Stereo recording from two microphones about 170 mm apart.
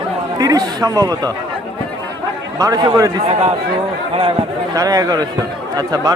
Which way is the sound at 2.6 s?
20° right (ahead or behind).